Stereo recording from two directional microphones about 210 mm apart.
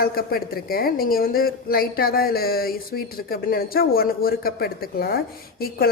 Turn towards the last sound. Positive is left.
turn(degrees=45)  # may be behind; listen again after turning